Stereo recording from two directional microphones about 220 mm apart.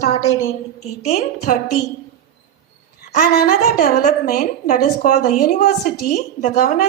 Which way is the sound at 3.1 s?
40° left (ahead or behind).